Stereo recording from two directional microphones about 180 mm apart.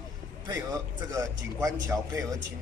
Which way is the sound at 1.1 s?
15° right (ahead or behind).